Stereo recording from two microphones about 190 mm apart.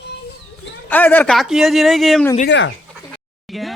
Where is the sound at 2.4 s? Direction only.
70° left (ahead or behind).